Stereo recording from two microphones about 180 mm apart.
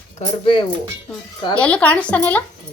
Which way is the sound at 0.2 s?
30° left (ahead or behind).